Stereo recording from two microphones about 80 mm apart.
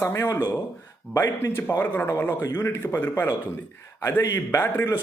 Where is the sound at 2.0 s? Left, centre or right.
Left.